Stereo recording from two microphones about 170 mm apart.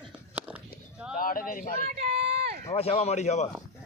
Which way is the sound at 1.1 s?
55° left (ahead or behind).